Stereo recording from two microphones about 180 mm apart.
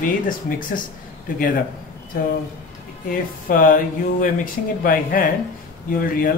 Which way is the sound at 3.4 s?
50° left (ahead or behind).